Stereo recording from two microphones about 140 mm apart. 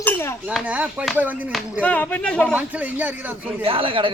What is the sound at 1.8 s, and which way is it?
Speech, 10° left (ahead or behind).